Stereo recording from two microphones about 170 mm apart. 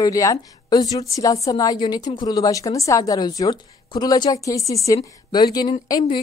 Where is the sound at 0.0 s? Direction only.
20° left (ahead or behind).